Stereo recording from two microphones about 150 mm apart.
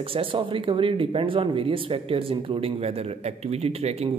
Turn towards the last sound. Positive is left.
turn(degrees=-45)  # may be behind; listen again after turning